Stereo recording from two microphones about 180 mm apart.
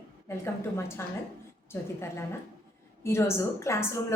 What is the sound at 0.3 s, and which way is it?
Speech, 15° left (ahead or behind).